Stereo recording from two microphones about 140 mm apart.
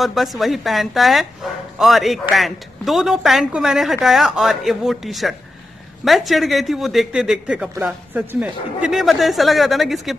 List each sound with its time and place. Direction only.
0.0 s speech: centre (ahead or behind)